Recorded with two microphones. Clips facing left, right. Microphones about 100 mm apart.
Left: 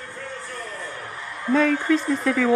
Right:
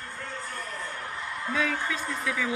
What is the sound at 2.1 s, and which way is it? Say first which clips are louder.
Speech: left 9 dB; 55° left (ahead or behind).